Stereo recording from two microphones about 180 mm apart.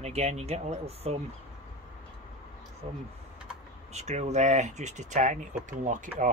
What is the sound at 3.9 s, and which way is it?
Speech, 40° right (ahead or behind).